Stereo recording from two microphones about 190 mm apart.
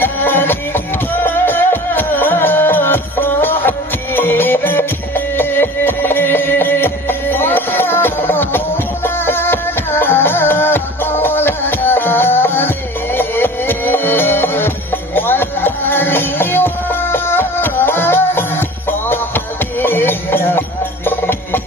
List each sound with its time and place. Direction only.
0.0 s music: 10° left (ahead or behind)